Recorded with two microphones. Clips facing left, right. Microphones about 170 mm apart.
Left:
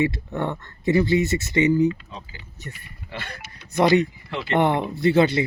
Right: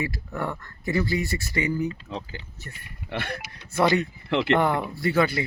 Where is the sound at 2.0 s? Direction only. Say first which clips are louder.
Right 6 dB; 70° right (ahead or behind).